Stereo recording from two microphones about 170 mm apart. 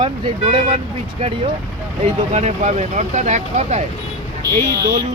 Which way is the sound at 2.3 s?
45° right (ahead or behind).